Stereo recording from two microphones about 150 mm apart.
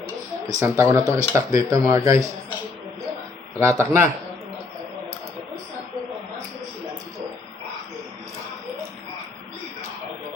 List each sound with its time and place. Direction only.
0.4 s speech: 20° right (ahead or behind)
3.6 s speech: 20° right (ahead or behind)